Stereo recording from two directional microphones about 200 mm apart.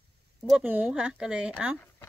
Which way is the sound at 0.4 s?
5° right (ahead or behind).